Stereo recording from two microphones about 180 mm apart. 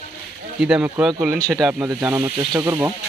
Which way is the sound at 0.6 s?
5° right (ahead or behind).